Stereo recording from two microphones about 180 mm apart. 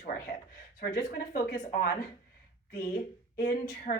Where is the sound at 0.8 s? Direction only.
50° left (ahead or behind).